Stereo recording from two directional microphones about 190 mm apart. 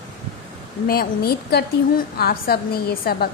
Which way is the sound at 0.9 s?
55° left (ahead or behind).